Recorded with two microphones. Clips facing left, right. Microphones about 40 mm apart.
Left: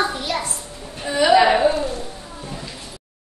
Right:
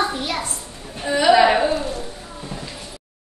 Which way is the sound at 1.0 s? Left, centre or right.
Centre.